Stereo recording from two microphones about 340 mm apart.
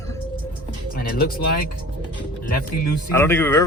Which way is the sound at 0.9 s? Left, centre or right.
Left.